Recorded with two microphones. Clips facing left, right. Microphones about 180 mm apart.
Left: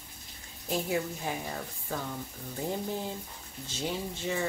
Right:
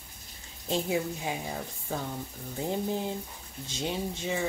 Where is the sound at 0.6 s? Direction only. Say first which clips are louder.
Right 2 dB; 20° right (ahead or behind).